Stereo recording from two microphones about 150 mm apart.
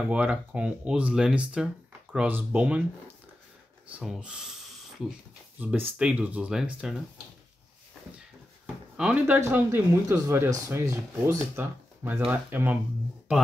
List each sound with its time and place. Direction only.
0.1 s speech: 10° right (ahead or behind)
4.0 s speech: 5° right (ahead or behind)
8.9 s speech: 5° right (ahead or behind)